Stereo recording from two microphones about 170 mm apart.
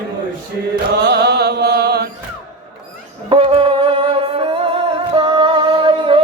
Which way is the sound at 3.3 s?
35° right (ahead or behind).